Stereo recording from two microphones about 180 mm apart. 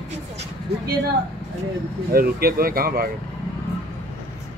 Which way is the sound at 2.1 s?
55° right (ahead or behind).